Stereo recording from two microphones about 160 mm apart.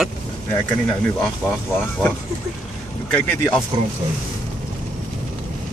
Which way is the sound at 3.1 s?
5° left (ahead or behind).